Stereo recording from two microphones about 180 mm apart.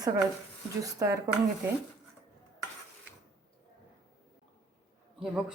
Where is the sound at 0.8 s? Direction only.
20° right (ahead or behind).